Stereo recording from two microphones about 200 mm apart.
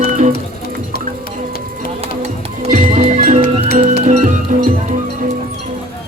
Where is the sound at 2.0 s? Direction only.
30° right (ahead or behind).